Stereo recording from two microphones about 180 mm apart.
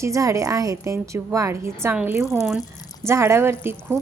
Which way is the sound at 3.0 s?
15° right (ahead or behind).